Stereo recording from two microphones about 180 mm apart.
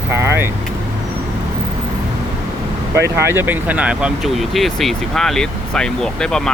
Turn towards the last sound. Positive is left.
turn(degrees=5)  # may be behind; listen again after turning